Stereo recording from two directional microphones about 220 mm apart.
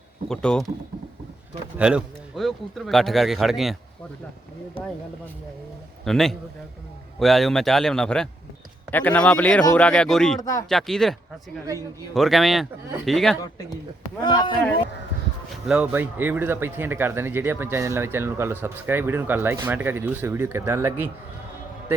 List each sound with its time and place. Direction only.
0.3 s speech: 5° left (ahead or behind)
1.8 s speech: 5° right (ahead or behind)
4.8 s speech: 25° left (ahead or behind)
6.1 s speech: centre (ahead or behind)
14.2 s speech: 20° left (ahead or behind)
15.6 s speech: 5° right (ahead or behind)